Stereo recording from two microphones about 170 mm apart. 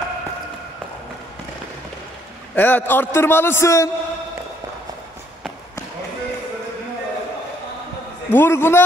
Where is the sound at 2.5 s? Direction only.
10° left (ahead or behind).